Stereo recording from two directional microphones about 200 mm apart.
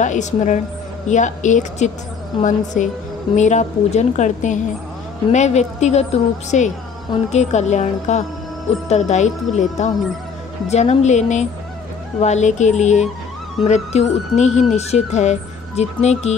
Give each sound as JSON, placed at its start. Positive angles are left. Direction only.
{"t": 0.0, "sound": "a woman's voice", "side_deg": 40}